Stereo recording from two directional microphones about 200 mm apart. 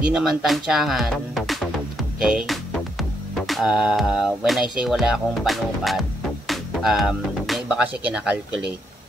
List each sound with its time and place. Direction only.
0.1 s speech: centre (ahead or behind)